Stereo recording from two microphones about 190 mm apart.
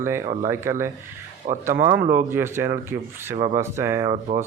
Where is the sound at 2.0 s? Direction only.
45° right (ahead or behind).